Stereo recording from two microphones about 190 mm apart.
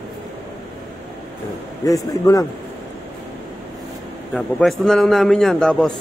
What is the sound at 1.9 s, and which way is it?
Speech, 15° left (ahead or behind).